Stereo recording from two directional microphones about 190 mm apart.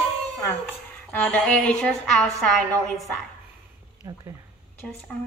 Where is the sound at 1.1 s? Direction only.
5° left (ahead or behind).